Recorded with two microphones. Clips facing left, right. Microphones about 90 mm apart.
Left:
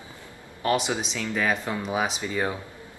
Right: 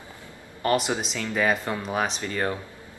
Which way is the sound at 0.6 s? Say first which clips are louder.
Right 1 dB; centre (ahead or behind).